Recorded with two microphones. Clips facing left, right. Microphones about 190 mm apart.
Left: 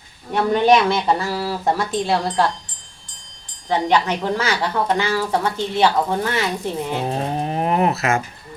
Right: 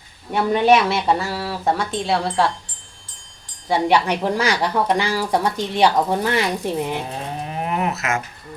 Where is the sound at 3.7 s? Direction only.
10° right (ahead or behind).